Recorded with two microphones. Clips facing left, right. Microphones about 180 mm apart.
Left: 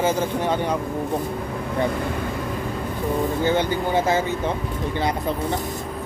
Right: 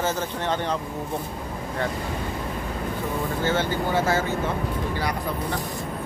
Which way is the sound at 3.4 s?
15° left (ahead or behind).